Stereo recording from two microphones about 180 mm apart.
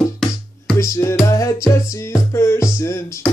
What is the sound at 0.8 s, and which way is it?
Music, 15° left (ahead or behind).